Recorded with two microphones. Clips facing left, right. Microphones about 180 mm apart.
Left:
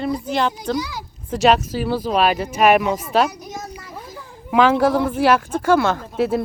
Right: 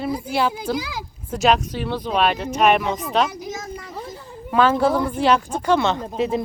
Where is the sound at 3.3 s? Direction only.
90° right.